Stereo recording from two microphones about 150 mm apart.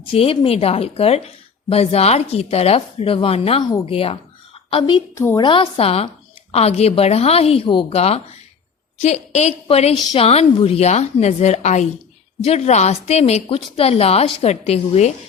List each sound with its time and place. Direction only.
0.1 s a woman's voice: 40° left (ahead or behind)
3.6 s speech: 25° left (ahead or behind)
3.8 s a woman's voice: 40° left (ahead or behind)
5.1 s a woman's voice: 15° left (ahead or behind)
5.4 s a woman's voice: 35° left (ahead or behind)